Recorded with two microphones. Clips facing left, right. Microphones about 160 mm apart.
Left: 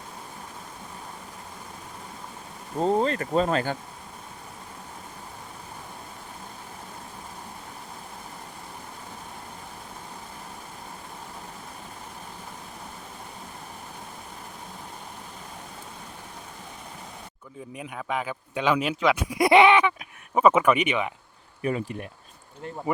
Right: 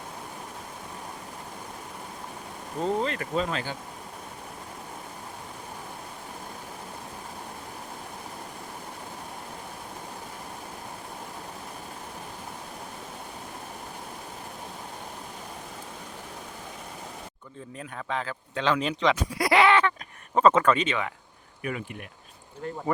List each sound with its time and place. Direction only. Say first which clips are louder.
2.8 s speech: left 4 dB; 40° left (ahead or behind)
17.7 s speech: left 2 dB; 10° left (ahead or behind)
19.4 s speech: left 4 dB; 20° left (ahead or behind)
21.6 s speech: left 6 dB; 35° left (ahead or behind)